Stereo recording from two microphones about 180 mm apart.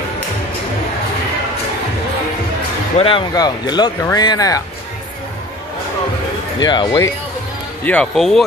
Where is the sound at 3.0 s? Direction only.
30° left (ahead or behind).